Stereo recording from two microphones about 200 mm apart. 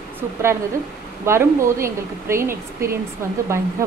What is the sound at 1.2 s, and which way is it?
Speech, 10° right (ahead or behind).